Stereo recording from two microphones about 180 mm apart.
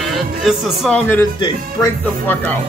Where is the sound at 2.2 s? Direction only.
10° left (ahead or behind).